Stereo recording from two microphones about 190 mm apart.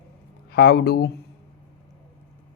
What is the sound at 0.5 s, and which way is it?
Speech, 55° left (ahead or behind).